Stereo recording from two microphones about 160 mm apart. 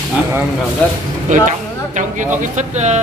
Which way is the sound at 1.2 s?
50° right (ahead or behind).